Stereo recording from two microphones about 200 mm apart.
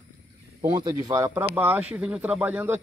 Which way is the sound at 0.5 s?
20° right (ahead or behind).